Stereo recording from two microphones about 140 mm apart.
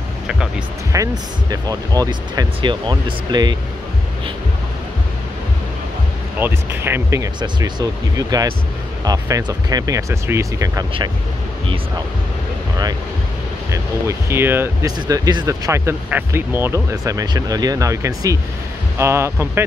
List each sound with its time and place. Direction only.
0.9 s speech: 25° right (ahead or behind)
6.4 s speech: 15° right (ahead or behind)
7.3 s speech: 30° right (ahead or behind)
14.0 s speech: 15° right (ahead or behind)
14.9 s speech: 25° right (ahead or behind)